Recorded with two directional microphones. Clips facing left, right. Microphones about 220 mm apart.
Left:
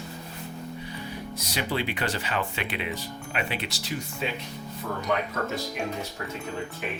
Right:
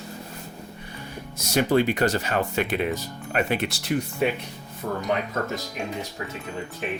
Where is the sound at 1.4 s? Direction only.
45° right (ahead or behind).